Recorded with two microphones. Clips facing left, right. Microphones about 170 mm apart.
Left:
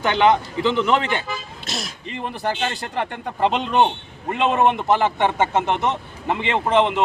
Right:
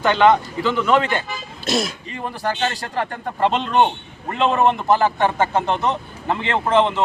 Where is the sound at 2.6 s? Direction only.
20° left (ahead or behind).